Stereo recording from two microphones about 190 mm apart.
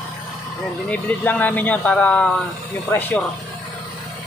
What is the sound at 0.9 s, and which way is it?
Speech, 10° left (ahead or behind).